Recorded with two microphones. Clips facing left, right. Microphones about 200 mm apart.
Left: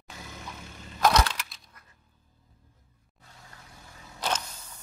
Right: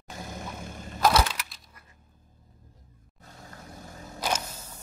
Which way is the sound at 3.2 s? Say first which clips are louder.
Right 6 dB; 45° right (ahead or behind).